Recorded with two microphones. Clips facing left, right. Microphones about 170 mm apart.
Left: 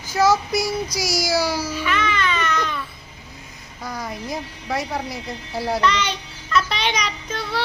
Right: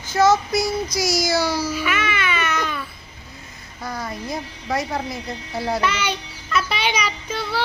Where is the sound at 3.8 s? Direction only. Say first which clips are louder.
Right 1 dB; 10° left (ahead or behind).